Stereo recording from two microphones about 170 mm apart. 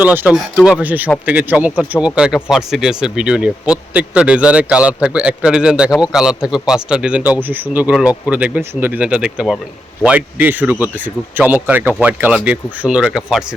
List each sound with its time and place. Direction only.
0.0 s speech: 10° right (ahead or behind)